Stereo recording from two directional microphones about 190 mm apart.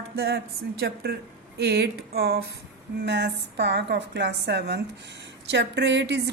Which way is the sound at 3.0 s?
65° right (ahead or behind).